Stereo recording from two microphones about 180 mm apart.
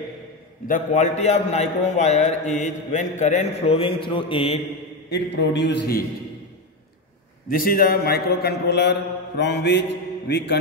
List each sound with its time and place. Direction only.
0.7 s a man's voice: 45° left (ahead or behind)
5.1 s a man's voice: 70° left (ahead or behind)
7.4 s a man's voice: 50° left (ahead or behind); by 10.6 s 70° left (ahead or behind)